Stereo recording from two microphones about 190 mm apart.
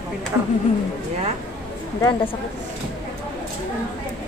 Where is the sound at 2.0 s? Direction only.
20° left (ahead or behind).